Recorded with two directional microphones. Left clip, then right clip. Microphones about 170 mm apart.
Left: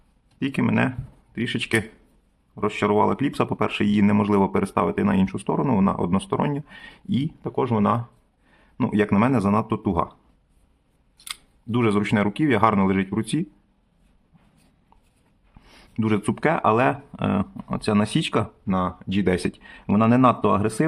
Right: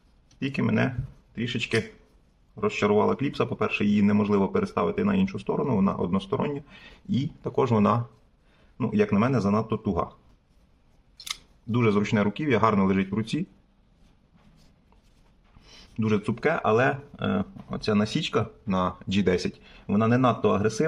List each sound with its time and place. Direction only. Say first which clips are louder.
0.3 s speech: left 4 dB; 25° left (ahead or behind)
7.4 s speech: even; 10° left (ahead or behind)
8.8 s speech: left 3 dB; 25° left (ahead or behind)
11.2 s speech: right 1 dB; 20° left (ahead or behind)
15.6 s speech: left 4 dB; 25° left (ahead or behind)
18.7 s speech: left 1 dB; 10° left (ahead or behind); by 20.8 s 30° left (ahead or behind)